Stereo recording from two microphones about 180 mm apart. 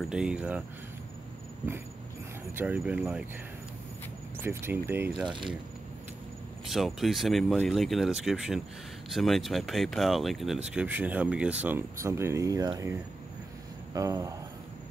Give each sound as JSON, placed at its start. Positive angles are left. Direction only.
{"t": 0.0, "sound": "speech", "side_deg": -5}
{"t": 2.5, "sound": "speech", "side_deg": -10}
{"t": 4.4, "sound": "speech", "side_deg": -15}
{"t": 5.2, "sound": "speech", "side_deg": -25}
{"t": 6.7, "sound": "speech", "side_deg": 0}
{"t": 13.9, "sound": "speech", "side_deg": -20}